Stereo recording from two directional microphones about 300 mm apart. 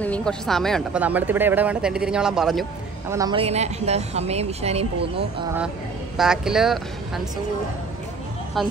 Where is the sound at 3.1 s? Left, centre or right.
Centre.